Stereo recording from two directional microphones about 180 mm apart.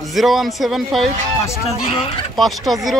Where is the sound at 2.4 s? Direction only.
Centre (ahead or behind).